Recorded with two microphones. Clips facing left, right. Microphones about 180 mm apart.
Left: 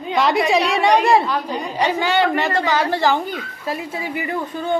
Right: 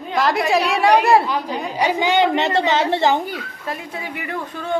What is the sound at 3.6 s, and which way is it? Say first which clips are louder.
Speech: left 5 dB; 5° left (ahead or behind).